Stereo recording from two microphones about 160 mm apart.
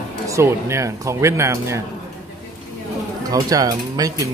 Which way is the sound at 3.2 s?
20° right (ahead or behind).